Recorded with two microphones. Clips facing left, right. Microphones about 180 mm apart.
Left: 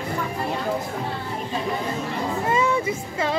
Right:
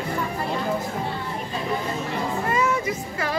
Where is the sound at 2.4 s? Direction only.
25° left (ahead or behind).